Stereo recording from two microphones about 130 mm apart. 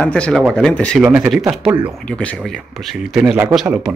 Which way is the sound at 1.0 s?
10° right (ahead or behind).